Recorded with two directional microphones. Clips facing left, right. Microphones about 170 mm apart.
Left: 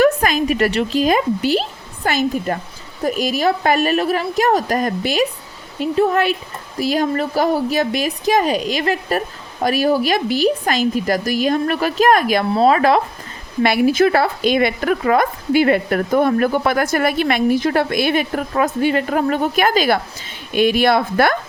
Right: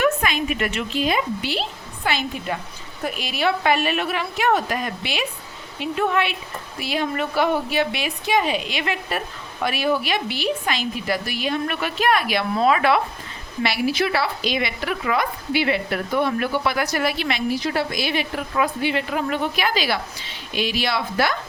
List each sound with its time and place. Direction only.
0.0 s speech: 40° left (ahead or behind)
12.5 s speech: 35° left (ahead or behind)
13.6 s speech: 50° left (ahead or behind)